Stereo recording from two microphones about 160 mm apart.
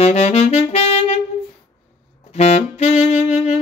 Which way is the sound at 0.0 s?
40° left (ahead or behind).